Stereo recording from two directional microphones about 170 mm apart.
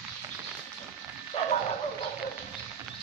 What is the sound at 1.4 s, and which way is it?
Bow-wow, 35° left (ahead or behind).